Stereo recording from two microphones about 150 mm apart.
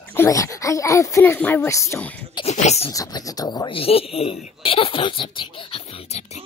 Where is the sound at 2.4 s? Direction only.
45° left (ahead or behind).